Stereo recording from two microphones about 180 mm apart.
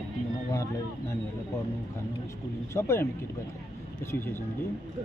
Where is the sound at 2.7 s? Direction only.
15° left (ahead or behind).